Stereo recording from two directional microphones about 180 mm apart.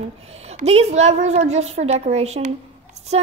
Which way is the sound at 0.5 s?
35° right (ahead or behind).